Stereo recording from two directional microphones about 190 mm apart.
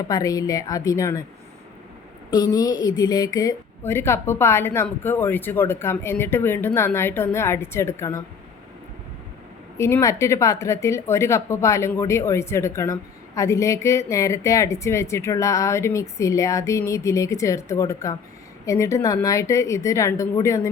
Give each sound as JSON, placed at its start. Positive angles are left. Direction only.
{"t": 0.1, "sound": "speech", "side_deg": 20}
{"t": 2.3, "sound": "speech", "side_deg": 20}
{"t": 9.7, "sound": "speech", "side_deg": 15}